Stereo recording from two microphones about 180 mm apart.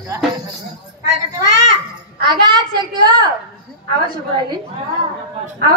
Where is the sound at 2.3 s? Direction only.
25° right (ahead or behind).